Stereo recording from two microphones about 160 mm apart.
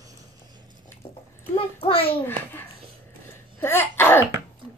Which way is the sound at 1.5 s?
35° left (ahead or behind).